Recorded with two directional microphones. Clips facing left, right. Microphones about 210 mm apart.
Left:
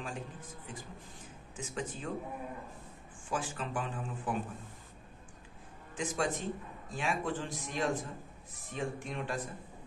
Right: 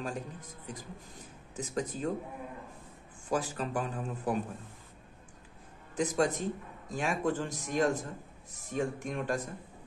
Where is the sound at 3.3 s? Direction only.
40° right (ahead or behind).